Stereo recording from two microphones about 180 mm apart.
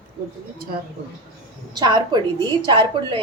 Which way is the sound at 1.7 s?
20° right (ahead or behind).